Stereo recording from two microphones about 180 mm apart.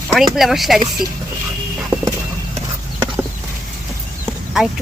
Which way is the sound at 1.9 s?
25° right (ahead or behind).